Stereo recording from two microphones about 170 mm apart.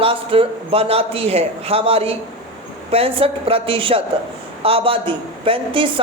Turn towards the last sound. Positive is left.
turn(degrees=-30)  # may be behind; listen again after turning